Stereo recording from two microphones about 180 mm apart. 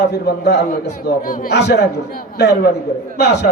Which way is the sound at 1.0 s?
50° left (ahead or behind).